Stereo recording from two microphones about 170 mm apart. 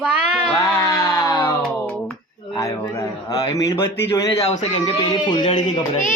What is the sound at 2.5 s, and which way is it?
A man's voice, 20° left (ahead or behind).